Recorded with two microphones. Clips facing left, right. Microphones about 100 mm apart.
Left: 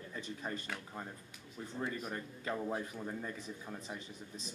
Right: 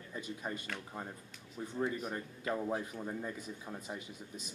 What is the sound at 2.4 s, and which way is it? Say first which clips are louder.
Speech: right 2 dB; 10° right (ahead or behind).